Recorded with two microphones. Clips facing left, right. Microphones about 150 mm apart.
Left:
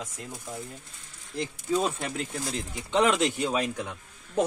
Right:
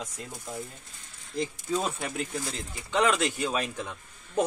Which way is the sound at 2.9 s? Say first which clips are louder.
Left 2 dB; 25° left (ahead or behind).